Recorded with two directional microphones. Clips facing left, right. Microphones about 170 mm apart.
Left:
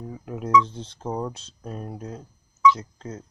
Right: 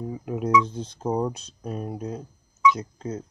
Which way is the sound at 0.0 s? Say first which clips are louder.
Right 4 dB; 20° right (ahead or behind).